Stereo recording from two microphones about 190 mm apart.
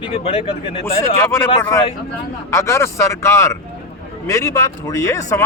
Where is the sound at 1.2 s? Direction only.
15° left (ahead or behind).